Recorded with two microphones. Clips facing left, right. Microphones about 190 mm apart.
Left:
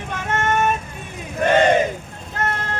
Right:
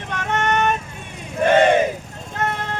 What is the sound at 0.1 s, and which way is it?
Vehicle, 5° left (ahead or behind).